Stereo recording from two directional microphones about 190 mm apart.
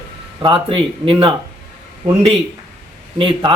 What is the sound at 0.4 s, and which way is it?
Speech, 25° right (ahead or behind).